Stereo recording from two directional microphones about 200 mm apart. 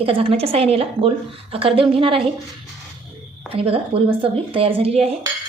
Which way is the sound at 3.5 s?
30° right (ahead or behind).